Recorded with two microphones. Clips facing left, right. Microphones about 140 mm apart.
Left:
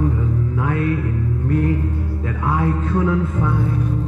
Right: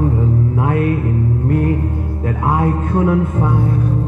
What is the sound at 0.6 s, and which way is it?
Speech, 40° right (ahead or behind).